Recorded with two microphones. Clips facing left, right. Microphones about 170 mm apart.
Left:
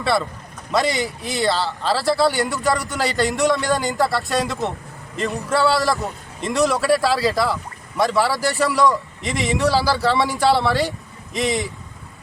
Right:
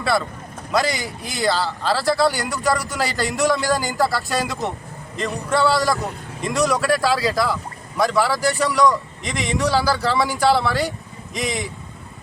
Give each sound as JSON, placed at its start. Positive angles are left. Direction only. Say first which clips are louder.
{"t": 0.7, "sound": "a man's voice", "louder": "left 1 dB", "side_deg": 0}